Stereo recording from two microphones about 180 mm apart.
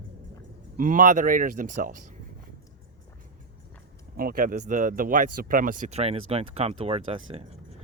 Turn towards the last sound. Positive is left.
turn(degrees=-35)  # may be behind; listen again after turning